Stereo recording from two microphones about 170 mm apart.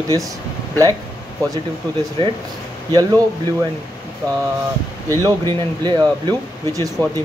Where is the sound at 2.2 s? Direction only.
30° right (ahead or behind).